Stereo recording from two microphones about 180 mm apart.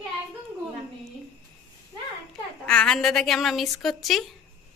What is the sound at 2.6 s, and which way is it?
A woman's voice, 5° left (ahead or behind).